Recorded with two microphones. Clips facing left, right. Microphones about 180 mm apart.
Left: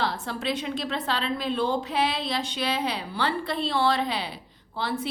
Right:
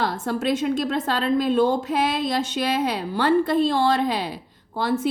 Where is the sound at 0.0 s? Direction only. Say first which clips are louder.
Right 5 dB; 45° right (ahead or behind).